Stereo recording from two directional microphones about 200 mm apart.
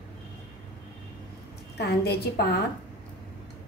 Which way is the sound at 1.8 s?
55° left (ahead or behind).